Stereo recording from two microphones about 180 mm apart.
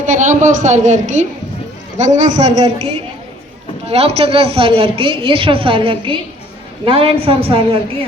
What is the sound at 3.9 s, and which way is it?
A woman's voice, 35° right (ahead or behind).